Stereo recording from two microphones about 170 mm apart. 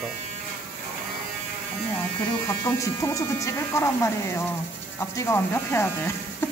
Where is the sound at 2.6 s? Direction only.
20° left (ahead or behind).